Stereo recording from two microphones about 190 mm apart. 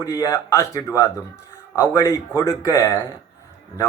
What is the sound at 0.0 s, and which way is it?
A man's voice, 15° left (ahead or behind).